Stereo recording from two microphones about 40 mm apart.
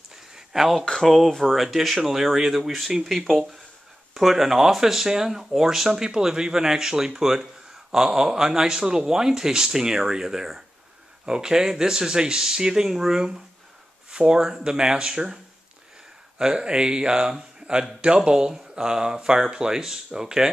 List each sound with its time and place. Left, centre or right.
0.1 s a sound: centre
1.0 s speech: centre; by 15.3 s right
16.3 s speech: right